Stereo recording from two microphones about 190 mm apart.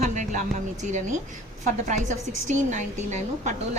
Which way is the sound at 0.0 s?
40° right (ahead or behind).